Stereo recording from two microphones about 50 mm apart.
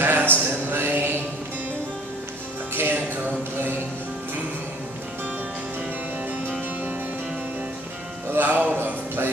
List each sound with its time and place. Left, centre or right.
0.0 s a sound: right
2.7 s music: right
8.3 s music: right